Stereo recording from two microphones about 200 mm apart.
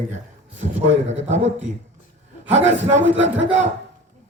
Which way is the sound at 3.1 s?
70° right (ahead or behind).